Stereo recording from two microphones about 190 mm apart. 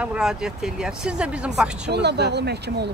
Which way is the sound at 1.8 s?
60° right (ahead or behind).